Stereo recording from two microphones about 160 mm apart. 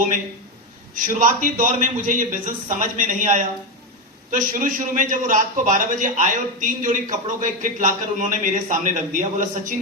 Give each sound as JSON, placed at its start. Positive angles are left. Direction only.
{"t": 0.9, "sound": "a man's voice", "side_deg": -55}